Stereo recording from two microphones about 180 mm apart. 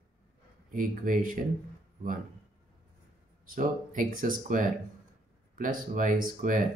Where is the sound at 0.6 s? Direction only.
50° right (ahead or behind).